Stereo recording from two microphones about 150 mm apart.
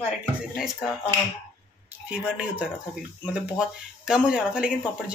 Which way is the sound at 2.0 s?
5° right (ahead or behind).